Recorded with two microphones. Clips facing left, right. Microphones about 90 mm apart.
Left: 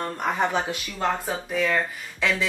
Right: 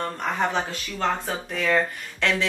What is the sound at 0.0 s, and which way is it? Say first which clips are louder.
Speech: left 1 dB; 10° left (ahead or behind).